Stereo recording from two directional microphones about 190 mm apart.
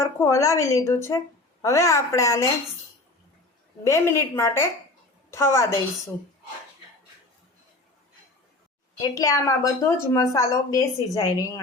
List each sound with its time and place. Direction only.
0.0 s a woman's voice: 15° left (ahead or behind)
3.8 s a woman's voice: 15° left (ahead or behind)
9.0 s a woman's voice: 15° left (ahead or behind)